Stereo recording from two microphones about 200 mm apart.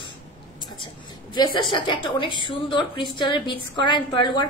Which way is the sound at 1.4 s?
25° left (ahead or behind).